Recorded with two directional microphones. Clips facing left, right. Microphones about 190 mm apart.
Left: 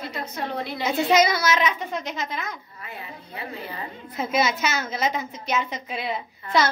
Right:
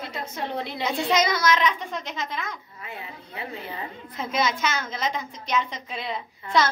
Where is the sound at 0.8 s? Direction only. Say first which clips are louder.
Left 4 dB; 5° left (ahead or behind).